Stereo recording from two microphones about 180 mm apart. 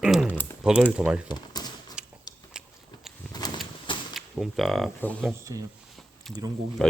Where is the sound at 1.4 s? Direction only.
20° left (ahead or behind).